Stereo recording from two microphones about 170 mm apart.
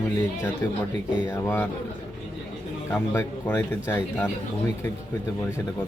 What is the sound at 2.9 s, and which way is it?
Speech, 15° left (ahead or behind).